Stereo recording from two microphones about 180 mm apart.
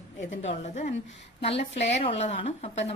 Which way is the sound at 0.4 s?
40° left (ahead or behind).